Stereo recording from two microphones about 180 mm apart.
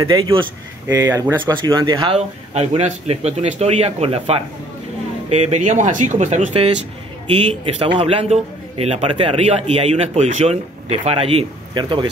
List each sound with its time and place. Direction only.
0.0 s speech: 25° right (ahead or behind)
0.8 s speech: 15° right (ahead or behind)
1.4 s a man's voice: 25° right (ahead or behind)